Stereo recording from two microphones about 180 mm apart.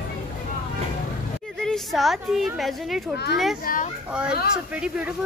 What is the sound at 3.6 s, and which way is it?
Speech, 50° left (ahead or behind).